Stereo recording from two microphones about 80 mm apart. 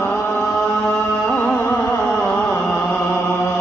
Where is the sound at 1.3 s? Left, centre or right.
Centre.